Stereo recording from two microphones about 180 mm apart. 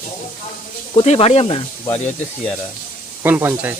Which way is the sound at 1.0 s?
35° left (ahead or behind).